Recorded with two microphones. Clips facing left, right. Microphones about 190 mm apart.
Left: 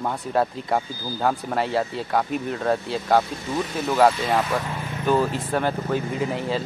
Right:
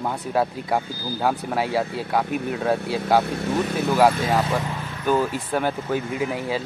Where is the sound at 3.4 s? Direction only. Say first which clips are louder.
Right 3 dB; 65° right (ahead or behind).